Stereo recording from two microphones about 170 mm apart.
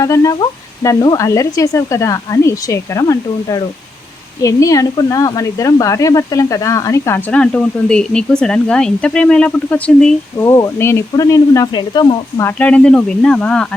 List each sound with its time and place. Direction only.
0.0 s speech: 20° left (ahead or behind)
10.3 s speech: 15° left (ahead or behind)
12.5 s speech: 5° left (ahead or behind)